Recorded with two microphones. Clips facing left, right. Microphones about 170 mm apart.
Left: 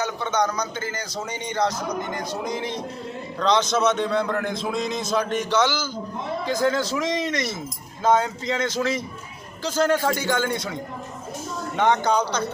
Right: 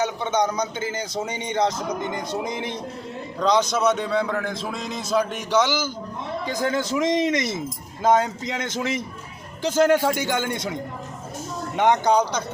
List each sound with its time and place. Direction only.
0.0 s a man's voice: 20° right (ahead or behind)
11.8 s a man's voice: 15° right (ahead or behind)